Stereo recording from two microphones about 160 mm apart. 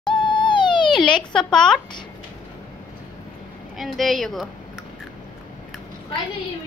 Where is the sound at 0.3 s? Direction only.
30° left (ahead or behind).